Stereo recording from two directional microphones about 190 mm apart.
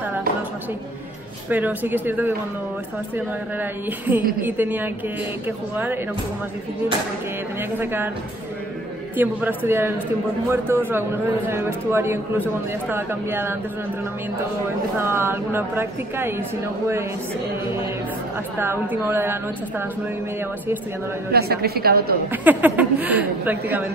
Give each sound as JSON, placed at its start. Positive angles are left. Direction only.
{"t": 1.5, "sound": "a man's voice", "side_deg": -10}
{"t": 4.4, "sound": "a man's voice", "side_deg": -10}
{"t": 7.8, "sound": "a man's voice", "side_deg": -10}
{"t": 9.1, "sound": "a man's voice", "side_deg": -10}
{"t": 15.0, "sound": "a man's voice", "side_deg": -10}
{"t": 18.6, "sound": "a man's voice", "side_deg": -10}
{"t": 21.3, "sound": "a woman's voice", "side_deg": -55}
{"t": 22.3, "sound": "a man's voice", "side_deg": -10}